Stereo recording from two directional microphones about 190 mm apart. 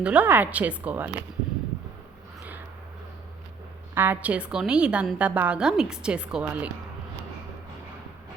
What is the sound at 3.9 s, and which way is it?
A woman's voice, 10° right (ahead or behind).